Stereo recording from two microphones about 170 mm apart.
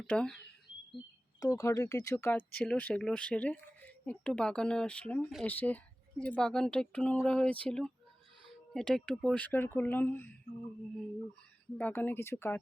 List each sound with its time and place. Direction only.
0.0 s speech: 5° left (ahead or behind)
1.4 s speech: 20° left (ahead or behind)
11.8 s speech: 10° left (ahead or behind)